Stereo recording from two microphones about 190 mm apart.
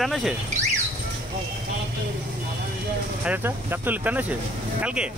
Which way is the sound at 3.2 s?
10° right (ahead or behind).